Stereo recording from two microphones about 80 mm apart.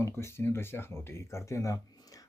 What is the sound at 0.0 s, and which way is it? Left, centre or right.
Speech, left.